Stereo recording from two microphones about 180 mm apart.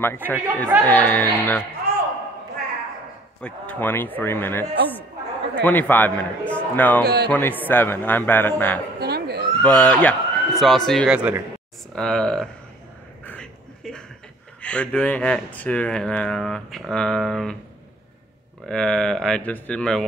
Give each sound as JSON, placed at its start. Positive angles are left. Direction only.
{"t": 0.0, "sound": "a man's voice", "side_deg": 10}
{"t": 3.3, "sound": "a man's voice", "side_deg": 5}
{"t": 9.0, "sound": "a sound", "side_deg": -65}
{"t": 9.6, "sound": "a man's voice", "side_deg": 5}
{"t": 11.9, "sound": "speech", "side_deg": 5}
{"t": 13.2, "sound": "a sound", "side_deg": 5}
{"t": 14.6, "sound": "speech", "side_deg": 5}
{"t": 18.7, "sound": "speech", "side_deg": 5}